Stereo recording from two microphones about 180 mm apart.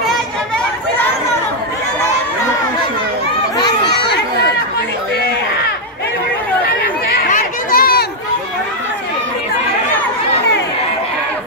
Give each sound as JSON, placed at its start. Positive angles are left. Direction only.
{"t": 3.5, "sound": "crowd", "side_deg": 25}
{"t": 7.2, "sound": "chatter", "side_deg": 50}